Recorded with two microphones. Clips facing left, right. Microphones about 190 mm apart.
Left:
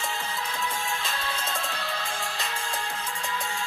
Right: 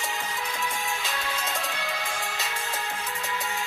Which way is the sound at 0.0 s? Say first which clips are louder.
Even; 15° right (ahead or behind).